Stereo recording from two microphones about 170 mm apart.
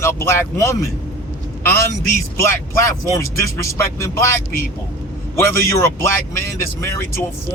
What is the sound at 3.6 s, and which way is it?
A man's voice, 15° left (ahead or behind).